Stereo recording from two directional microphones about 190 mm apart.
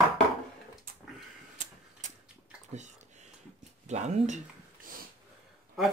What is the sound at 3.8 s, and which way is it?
Speech, 35° right (ahead or behind).